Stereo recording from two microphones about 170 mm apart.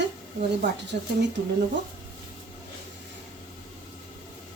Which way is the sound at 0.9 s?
65° right (ahead or behind).